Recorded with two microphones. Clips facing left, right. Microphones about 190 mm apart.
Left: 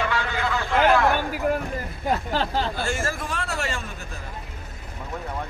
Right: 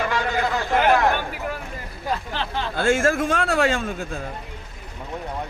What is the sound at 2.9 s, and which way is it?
Speech, 90° right.